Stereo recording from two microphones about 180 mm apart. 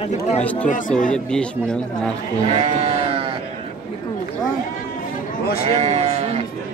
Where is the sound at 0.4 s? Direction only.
10° left (ahead or behind).